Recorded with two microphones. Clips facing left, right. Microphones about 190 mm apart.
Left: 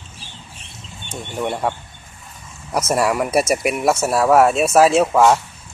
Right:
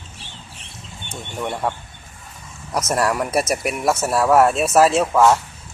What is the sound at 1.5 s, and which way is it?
Speech, 10° left (ahead or behind).